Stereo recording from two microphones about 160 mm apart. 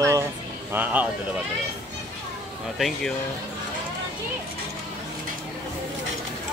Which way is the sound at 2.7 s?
Centre (ahead or behind).